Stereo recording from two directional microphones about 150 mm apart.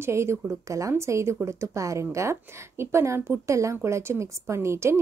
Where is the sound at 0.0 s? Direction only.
20° right (ahead or behind).